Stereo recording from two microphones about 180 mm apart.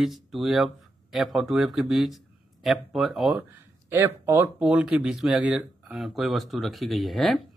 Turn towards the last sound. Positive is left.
turn(degrees=0)  # may be behind; listen again after turning